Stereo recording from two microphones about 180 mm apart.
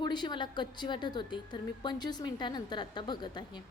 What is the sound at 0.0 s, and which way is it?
A woman's voice, 25° left (ahead or behind).